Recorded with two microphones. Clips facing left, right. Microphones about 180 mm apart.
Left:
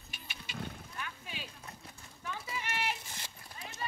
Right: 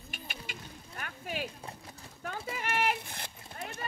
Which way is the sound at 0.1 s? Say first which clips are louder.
Right 2 dB; 50° right (ahead or behind).